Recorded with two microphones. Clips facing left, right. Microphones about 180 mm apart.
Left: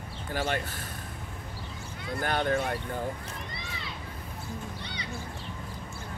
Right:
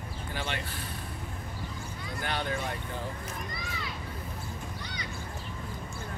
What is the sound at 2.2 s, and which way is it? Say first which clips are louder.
Speech: left 6 dB; 50° left (ahead or behind).